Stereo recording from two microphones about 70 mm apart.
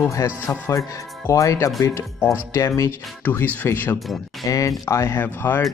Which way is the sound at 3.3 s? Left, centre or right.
Left.